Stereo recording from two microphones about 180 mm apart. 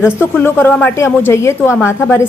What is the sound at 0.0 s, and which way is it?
A woman's voice, 15° left (ahead or behind).